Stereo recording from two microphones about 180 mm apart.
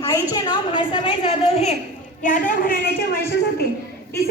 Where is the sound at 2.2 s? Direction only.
45° left (ahead or behind).